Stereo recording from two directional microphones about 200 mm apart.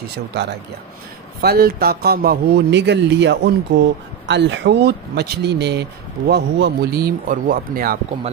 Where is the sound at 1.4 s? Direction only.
50° right (ahead or behind).